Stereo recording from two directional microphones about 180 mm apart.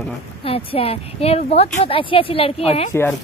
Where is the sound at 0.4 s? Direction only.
30° left (ahead or behind).